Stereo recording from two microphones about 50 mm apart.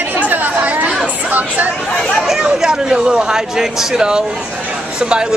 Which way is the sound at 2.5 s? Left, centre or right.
Centre.